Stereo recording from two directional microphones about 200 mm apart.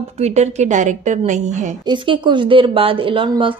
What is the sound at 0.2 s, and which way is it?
A woman's voice, 35° right (ahead or behind).